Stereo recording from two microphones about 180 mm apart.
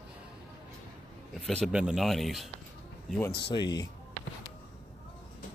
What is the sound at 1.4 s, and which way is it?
Speech, centre (ahead or behind).